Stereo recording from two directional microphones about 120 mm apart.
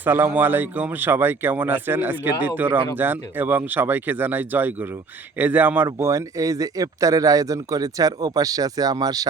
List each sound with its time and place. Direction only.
0.0 s speech: 15° right (ahead or behind); by 9.2 s 30° right (ahead or behind)